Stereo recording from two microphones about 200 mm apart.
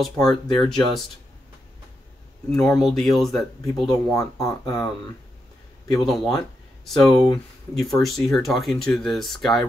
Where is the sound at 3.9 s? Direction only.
15° left (ahead or behind).